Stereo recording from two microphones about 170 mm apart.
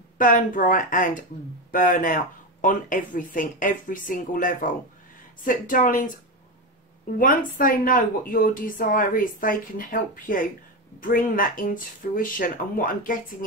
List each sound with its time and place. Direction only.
0.2 s speech: 55° left (ahead or behind)
7.2 s speech: 55° left (ahead or behind)